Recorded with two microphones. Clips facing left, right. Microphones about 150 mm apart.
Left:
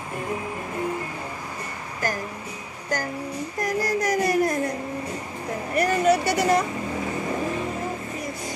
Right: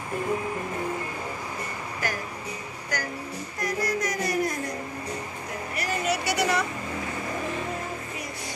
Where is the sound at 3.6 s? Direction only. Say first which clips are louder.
Left 3 dB; 45° left (ahead or behind).